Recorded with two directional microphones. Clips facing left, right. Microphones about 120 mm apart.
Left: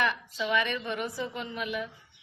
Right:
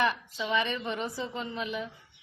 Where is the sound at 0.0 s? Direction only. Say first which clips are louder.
Right 1 dB; 25° right (ahead or behind).